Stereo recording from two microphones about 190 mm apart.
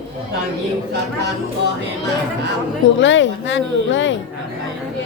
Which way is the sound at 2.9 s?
75° left (ahead or behind).